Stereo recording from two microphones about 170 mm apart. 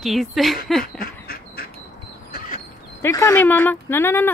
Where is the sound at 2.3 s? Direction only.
50° left (ahead or behind).